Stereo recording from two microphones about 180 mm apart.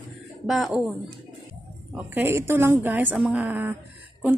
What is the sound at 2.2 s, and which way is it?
A woman's voice, 15° right (ahead or behind).